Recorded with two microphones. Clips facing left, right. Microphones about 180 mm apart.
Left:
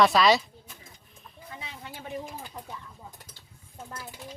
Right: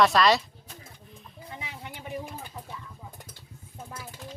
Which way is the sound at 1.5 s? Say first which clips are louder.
Right 1 dB; 15° right (ahead or behind).